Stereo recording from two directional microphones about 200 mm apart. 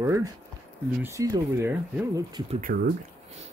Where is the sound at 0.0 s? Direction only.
15° right (ahead or behind).